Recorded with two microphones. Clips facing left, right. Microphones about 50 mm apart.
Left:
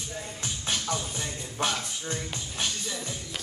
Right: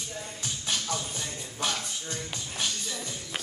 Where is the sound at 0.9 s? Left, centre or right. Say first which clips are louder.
Left 2 dB; centre.